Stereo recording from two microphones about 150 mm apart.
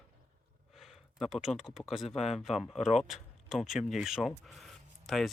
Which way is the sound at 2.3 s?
Centre (ahead or behind).